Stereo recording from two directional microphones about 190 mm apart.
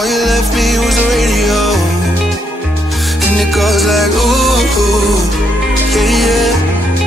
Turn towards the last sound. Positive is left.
turn(degrees=0)  # may be behind; listen again after turning